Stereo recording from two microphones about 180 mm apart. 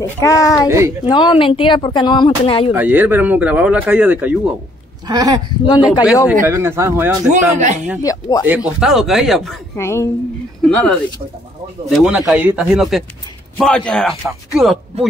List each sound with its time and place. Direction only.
0.0 s speech: 20° left (ahead or behind)
0.7 s speech: 15° right (ahead or behind)
1.0 s speech: 25° left (ahead or behind)
2.7 s speech: 10° right (ahead or behind)
5.0 s speech: 20° right (ahead or behind)
5.7 s speech: 25° left (ahead or behind)
6.2 s speech: 10° right (ahead or behind)
7.2 s speech: 40° right (ahead or behind)
8.0 s speech: 20° left (ahead or behind)
8.5 s speech: 5° right (ahead or behind)
9.8 s a woman's voice: 15° left (ahead or behind)
10.7 s speech: 5° left (ahead or behind)